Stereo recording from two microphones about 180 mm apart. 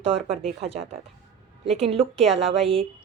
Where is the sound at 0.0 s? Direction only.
35° right (ahead or behind).